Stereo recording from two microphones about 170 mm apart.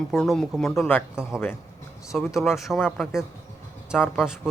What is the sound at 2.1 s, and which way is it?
Speech, centre (ahead or behind).